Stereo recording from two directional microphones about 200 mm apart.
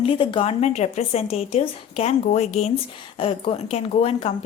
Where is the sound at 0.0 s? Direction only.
25° left (ahead or behind).